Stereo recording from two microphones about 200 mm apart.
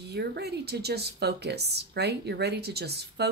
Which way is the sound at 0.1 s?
55° right (ahead or behind).